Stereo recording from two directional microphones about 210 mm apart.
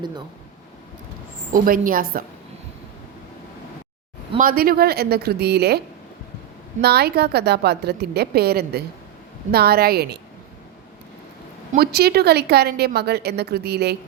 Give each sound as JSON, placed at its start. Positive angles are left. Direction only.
{"t": 1.5, "sound": "a woman's voice", "side_deg": -40}
{"t": 4.4, "sound": "a woman's voice", "side_deg": -45}
{"t": 6.8, "sound": "a woman's voice", "side_deg": -50}
{"t": 11.7, "sound": "a woman's voice", "side_deg": -50}